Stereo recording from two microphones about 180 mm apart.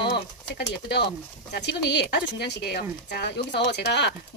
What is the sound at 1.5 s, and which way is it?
Speech, 70° left (ahead or behind).